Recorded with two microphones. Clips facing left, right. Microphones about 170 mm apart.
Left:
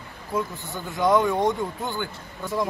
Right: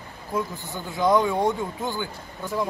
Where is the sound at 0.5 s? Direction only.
20° left (ahead or behind).